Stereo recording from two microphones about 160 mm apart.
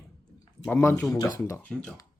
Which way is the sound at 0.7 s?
15° left (ahead or behind).